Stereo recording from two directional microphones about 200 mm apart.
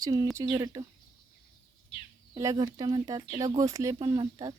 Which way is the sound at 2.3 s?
15° right (ahead or behind).